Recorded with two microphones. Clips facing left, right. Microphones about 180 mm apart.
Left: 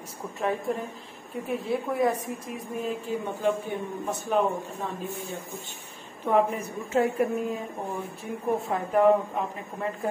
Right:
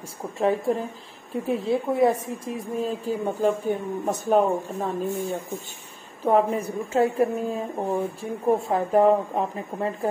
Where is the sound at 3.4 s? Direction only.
40° right (ahead or behind).